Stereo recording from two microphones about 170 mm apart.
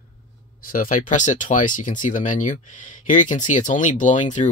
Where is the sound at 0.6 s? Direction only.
55° left (ahead or behind).